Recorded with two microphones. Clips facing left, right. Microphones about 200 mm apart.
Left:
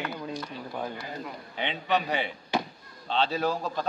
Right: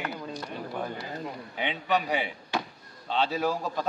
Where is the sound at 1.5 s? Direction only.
5° right (ahead or behind).